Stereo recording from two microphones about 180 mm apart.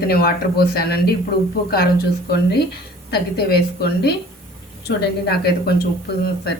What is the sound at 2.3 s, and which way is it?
Speech, 65° left (ahead or behind).